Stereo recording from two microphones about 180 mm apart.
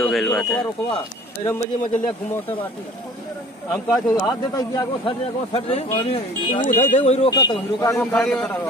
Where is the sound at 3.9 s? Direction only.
20° left (ahead or behind); by 7.3 s 35° left (ahead or behind).